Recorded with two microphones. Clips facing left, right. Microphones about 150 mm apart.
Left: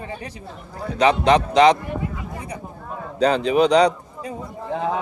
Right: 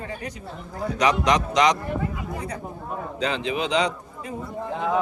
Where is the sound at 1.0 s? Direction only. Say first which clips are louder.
Left 5 dB; 30° left (ahead or behind).